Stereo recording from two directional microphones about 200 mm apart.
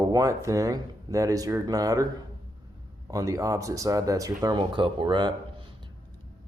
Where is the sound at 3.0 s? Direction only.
15° right (ahead or behind).